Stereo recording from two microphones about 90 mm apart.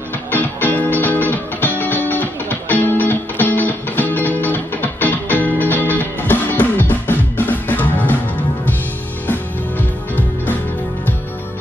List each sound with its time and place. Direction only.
0.3 s music: 20° left (ahead or behind)
9.3 s music: 20° left (ahead or behind)